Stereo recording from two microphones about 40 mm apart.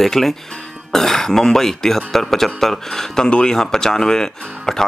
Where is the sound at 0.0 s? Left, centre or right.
Centre.